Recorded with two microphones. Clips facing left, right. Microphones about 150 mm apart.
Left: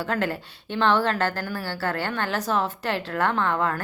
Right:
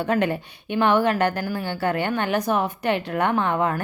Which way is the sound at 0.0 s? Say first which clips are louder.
Right 4 dB; 20° right (ahead or behind).